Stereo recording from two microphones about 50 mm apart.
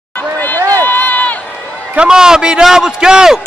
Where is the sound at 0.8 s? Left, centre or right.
Left.